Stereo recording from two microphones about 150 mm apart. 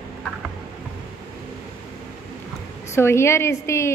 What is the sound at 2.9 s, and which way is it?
A woman's voice, 15° left (ahead or behind).